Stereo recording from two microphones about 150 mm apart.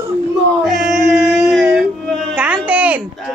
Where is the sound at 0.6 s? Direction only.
Centre (ahead or behind).